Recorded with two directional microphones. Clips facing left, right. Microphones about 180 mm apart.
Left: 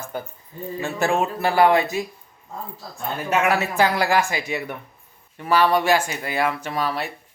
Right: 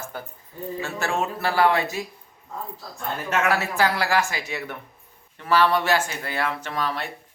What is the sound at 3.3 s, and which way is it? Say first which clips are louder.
Speech: left 3 dB; 15° left (ahead or behind).